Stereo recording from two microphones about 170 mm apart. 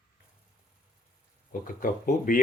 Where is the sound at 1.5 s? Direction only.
55° left (ahead or behind).